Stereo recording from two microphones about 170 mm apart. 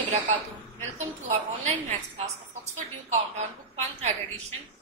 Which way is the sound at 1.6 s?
40° right (ahead or behind).